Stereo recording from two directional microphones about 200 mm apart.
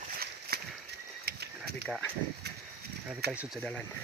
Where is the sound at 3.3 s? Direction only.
5° right (ahead or behind).